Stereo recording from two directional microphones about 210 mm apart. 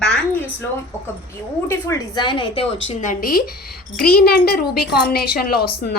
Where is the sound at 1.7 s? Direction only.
15° left (ahead or behind).